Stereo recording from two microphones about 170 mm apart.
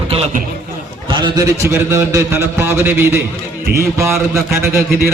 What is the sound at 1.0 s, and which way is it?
A man's voice, 25° right (ahead or behind).